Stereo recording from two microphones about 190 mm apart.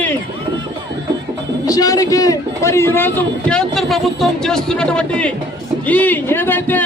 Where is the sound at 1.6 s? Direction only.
20° left (ahead or behind).